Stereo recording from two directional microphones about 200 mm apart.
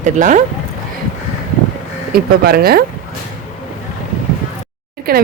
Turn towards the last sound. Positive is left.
turn(degrees=-50)  # may be behind; listen again after turning